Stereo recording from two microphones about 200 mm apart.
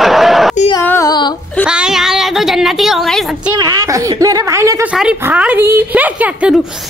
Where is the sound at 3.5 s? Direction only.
20° right (ahead or behind).